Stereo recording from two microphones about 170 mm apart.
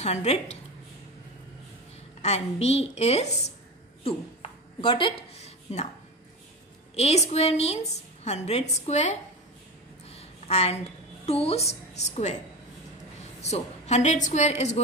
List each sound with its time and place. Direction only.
0.0 s a woman's voice: 40° left (ahead or behind)
2.2 s a woman's voice: 40° left (ahead or behind)
4.0 s a sound: 30° left (ahead or behind)
7.0 s a woman's voice: 40° left (ahead or behind)
13.4 s a woman's voice: 40° left (ahead or behind)